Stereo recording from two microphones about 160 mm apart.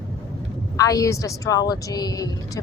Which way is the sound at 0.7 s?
20° left (ahead or behind).